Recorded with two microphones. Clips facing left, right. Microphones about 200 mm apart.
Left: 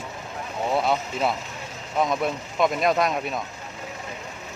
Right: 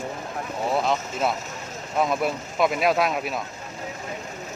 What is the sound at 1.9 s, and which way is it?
Speech, 5° right (ahead or behind).